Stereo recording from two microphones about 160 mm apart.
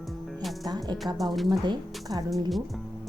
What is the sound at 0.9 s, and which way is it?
Speech, centre (ahead or behind).